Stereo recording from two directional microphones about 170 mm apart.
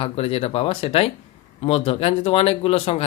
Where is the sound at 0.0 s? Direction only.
35° left (ahead or behind).